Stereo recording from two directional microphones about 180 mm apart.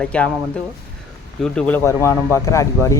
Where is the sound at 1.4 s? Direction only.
5° left (ahead or behind).